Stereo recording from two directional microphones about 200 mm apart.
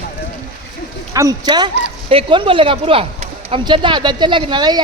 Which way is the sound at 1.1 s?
15° right (ahead or behind).